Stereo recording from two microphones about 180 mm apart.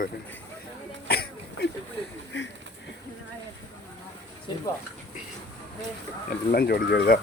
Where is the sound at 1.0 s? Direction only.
60° left (ahead or behind).